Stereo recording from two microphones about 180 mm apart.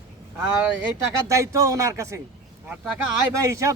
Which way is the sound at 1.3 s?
15° right (ahead or behind).